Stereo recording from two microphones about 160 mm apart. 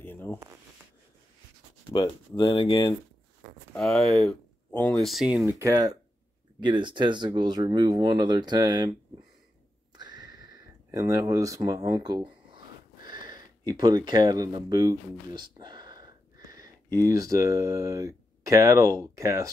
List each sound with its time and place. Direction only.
0.0 s a sound: 10° left (ahead or behind)
2.0 s speech: 30° left (ahead or behind)
3.7 s speech: 5° left (ahead or behind)
5.4 s speech: 15° right (ahead or behind)
6.6 s speech: 30° right (ahead or behind)
9.9 s a sound: 25° right (ahead or behind)